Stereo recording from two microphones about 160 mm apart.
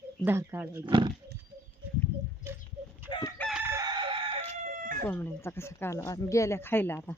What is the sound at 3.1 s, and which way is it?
Chicken, 30° left (ahead or behind).